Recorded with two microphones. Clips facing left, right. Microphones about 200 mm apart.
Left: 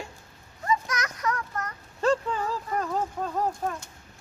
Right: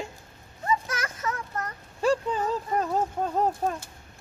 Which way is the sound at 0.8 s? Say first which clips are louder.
Left 2 dB; 30° right (ahead or behind).